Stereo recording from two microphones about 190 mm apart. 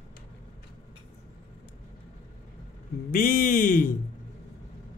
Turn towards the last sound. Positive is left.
turn(degrees=45)  # may be behind; listen again after turning